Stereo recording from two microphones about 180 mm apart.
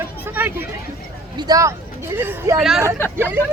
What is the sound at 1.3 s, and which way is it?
Speech, 20° right (ahead or behind).